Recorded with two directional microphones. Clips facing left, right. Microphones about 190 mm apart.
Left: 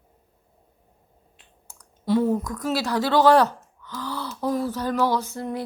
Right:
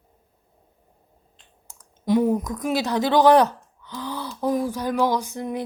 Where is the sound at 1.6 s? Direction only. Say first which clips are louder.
Right 2 dB; 20° right (ahead or behind).